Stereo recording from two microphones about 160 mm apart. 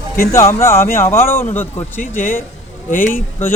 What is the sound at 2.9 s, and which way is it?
Speech, 55° left (ahead or behind).